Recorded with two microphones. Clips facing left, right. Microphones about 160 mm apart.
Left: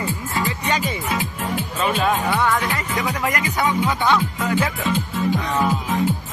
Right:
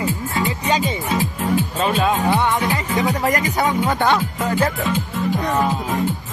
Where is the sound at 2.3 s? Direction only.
20° right (ahead or behind).